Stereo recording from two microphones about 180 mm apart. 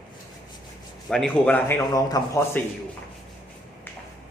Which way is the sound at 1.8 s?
20° left (ahead or behind).